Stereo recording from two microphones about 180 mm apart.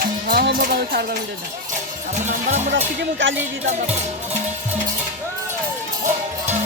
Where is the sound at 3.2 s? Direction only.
90° right.